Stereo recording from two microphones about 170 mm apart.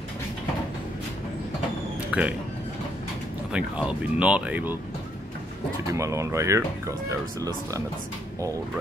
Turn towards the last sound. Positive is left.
turn(degrees=-20)  # may be behind; listen again after turning